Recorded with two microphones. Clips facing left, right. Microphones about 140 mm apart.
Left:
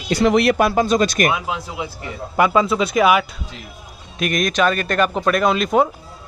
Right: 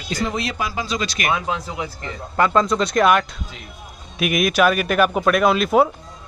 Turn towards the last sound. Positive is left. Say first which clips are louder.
# right 1 dB
turn(degrees=0)  # may be behind; listen again after turning